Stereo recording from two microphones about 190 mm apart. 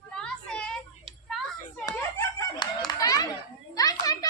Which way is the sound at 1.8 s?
15° left (ahead or behind).